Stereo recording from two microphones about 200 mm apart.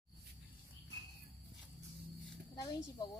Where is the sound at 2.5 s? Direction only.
20° left (ahead or behind).